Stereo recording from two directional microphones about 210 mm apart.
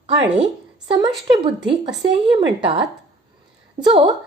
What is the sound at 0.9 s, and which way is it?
Speech, 25° right (ahead or behind).